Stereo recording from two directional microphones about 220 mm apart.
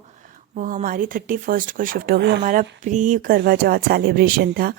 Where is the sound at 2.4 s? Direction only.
35° right (ahead or behind).